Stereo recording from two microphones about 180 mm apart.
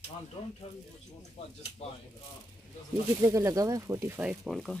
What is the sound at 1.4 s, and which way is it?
Speech, 35° left (ahead or behind).